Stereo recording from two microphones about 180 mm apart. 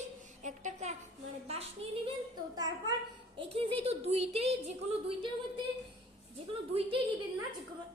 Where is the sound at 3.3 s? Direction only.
30° right (ahead or behind).